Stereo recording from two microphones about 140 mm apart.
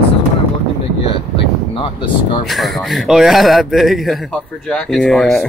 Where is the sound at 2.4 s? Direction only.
Centre (ahead or behind).